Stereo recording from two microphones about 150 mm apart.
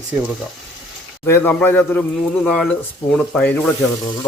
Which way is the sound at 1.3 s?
15° left (ahead or behind).